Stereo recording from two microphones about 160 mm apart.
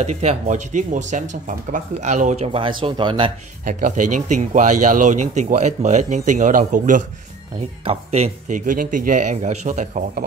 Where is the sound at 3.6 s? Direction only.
55° right (ahead or behind).